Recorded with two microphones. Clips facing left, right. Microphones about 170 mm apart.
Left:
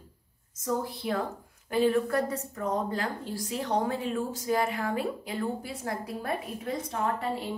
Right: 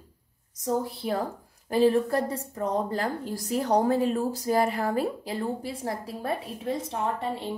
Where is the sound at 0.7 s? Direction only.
35° right (ahead or behind).